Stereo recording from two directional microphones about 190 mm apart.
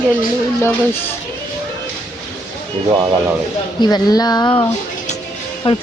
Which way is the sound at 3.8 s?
20° left (ahead or behind).